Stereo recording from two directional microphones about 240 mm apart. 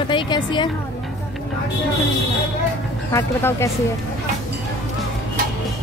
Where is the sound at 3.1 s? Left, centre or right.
Centre.